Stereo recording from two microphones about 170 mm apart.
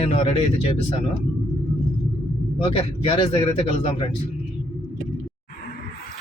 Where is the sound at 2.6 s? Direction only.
30° left (ahead or behind).